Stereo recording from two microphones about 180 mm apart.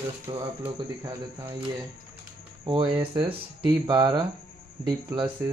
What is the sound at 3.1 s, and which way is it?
Speech, 25° right (ahead or behind).